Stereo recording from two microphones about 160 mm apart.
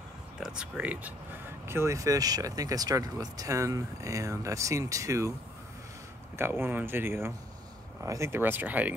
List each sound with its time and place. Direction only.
0.4 s speech: 5° right (ahead or behind)
6.3 s speech: 15° right (ahead or behind)